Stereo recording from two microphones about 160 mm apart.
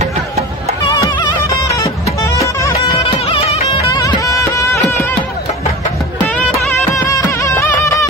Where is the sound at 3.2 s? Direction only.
40° left (ahead or behind).